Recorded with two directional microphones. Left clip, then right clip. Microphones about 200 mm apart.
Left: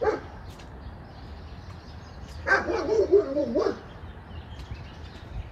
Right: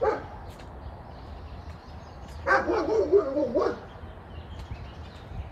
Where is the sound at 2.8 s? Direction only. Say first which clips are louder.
Left 1 dB; 25° right (ahead or behind).